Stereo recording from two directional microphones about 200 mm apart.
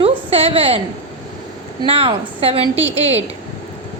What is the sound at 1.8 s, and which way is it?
Speech, 25° right (ahead or behind).